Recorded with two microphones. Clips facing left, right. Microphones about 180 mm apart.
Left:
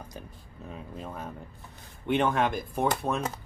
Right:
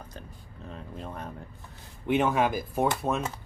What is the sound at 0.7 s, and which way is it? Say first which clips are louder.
Speech: even; 5° left (ahead or behind).